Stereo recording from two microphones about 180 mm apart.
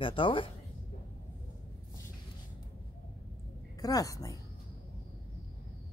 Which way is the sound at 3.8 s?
20° left (ahead or behind).